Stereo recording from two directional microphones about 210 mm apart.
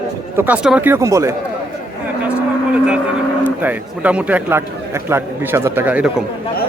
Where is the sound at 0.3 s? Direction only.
5° right (ahead or behind).